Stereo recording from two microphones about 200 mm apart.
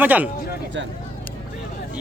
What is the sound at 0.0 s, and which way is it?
Speech, 10° right (ahead or behind).